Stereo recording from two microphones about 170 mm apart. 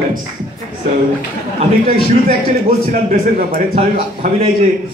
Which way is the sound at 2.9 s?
45° right (ahead or behind).